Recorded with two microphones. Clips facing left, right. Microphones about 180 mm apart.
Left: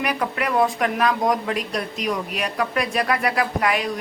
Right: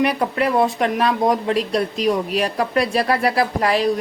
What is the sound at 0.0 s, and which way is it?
Speech, 30° right (ahead or behind).